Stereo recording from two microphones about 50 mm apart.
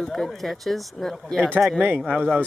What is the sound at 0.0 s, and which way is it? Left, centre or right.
Speech, centre.